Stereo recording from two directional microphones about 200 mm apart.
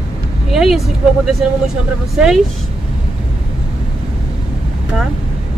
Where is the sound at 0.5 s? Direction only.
Centre (ahead or behind).